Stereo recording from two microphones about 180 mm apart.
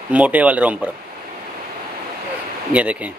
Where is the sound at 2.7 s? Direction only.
10° right (ahead or behind).